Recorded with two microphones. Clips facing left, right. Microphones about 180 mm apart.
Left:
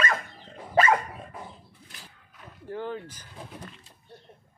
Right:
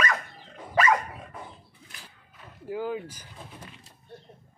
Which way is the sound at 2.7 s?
5° right (ahead or behind).